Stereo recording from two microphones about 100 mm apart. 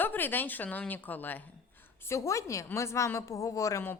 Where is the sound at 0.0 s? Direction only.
20° left (ahead or behind).